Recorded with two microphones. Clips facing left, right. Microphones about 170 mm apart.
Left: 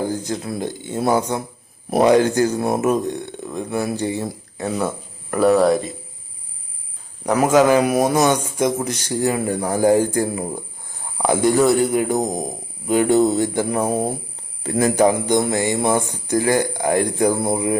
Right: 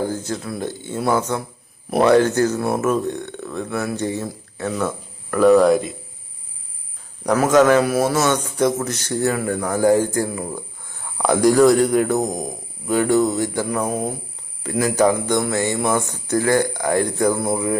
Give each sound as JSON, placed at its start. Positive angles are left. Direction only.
{"t": 0.1, "sound": "speech", "side_deg": 15}
{"t": 7.3, "sound": "speech", "side_deg": 10}
{"t": 10.2, "sound": "a sound", "side_deg": 25}
{"t": 11.2, "sound": "speech", "side_deg": 5}
{"t": 12.9, "sound": "a sound", "side_deg": 20}
{"t": 14.6, "sound": "speech", "side_deg": 30}